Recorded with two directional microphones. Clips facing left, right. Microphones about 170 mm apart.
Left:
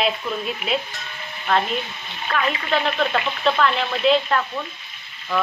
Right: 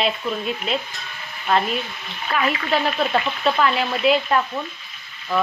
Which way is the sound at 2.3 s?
5° right (ahead or behind).